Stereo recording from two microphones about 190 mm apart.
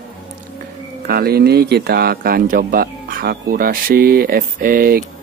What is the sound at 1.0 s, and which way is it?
Speech, 55° right (ahead or behind).